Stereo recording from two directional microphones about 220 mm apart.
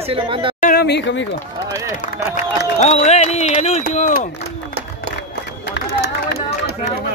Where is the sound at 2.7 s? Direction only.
30° left (ahead or behind).